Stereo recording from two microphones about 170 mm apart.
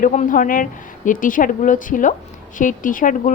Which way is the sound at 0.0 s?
50° left (ahead or behind).